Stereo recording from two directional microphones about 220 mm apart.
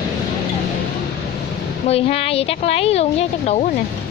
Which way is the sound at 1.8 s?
25° left (ahead or behind).